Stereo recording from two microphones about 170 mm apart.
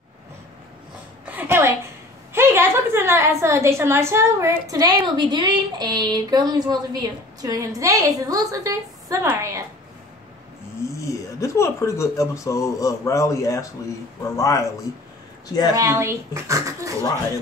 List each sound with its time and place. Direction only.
1.2 s a sound: 10° right (ahead or behind)
2.3 s a woman's voice: 15° right (ahead or behind)
10.8 s a man's voice: 20° left (ahead or behind)
15.7 s speech: 15° right (ahead or behind)